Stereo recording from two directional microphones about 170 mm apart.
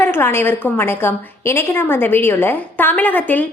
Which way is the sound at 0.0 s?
15° left (ahead or behind).